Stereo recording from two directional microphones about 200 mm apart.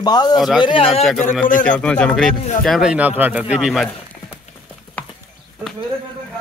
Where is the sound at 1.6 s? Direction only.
5° left (ahead or behind).